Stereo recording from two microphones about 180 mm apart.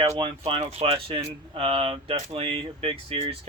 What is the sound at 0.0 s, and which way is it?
Speech, 30° right (ahead or behind).